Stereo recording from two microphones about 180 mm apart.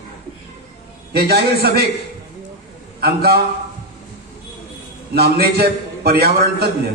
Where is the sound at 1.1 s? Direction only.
60° right (ahead or behind).